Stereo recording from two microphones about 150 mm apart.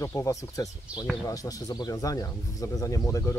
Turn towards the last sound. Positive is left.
turn(degrees=20)  # may be behind; listen again after turning